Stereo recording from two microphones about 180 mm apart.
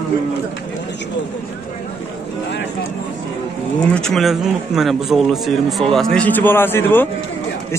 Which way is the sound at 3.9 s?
Centre (ahead or behind).